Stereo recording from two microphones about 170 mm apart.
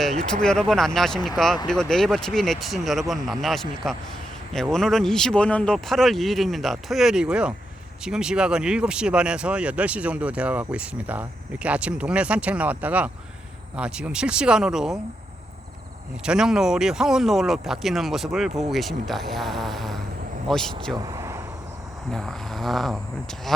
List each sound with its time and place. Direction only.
0.0 s speech: centre (ahead or behind)
16.2 s speech: 5° right (ahead or behind)
20.9 s vehicle: 20° right (ahead or behind)
22.1 s speech: centre (ahead or behind)